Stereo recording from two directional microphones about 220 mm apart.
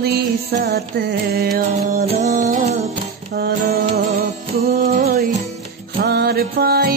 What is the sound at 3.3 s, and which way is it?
Music, 45° right (ahead or behind).